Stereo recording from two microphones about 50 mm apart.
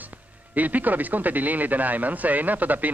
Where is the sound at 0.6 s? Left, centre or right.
Right.